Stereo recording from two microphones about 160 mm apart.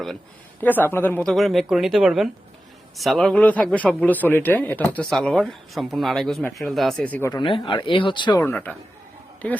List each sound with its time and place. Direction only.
0.6 s a man's voice: 10° left (ahead or behind)
7.3 s speech: 30° left (ahead or behind)
8.4 s speech: 10° left (ahead or behind)